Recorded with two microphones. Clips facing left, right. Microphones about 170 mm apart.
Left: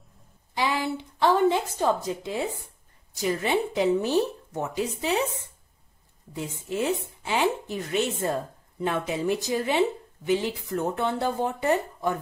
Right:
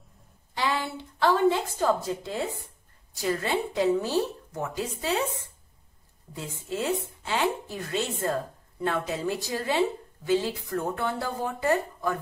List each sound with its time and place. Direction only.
0.6 s a woman's voice: 15° left (ahead or behind)